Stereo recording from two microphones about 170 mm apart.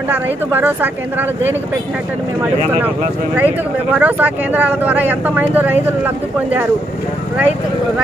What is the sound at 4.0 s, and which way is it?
Speech, 10° right (ahead or behind).